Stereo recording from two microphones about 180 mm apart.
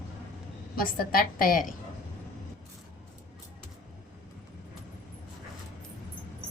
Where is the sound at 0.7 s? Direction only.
55° left (ahead or behind).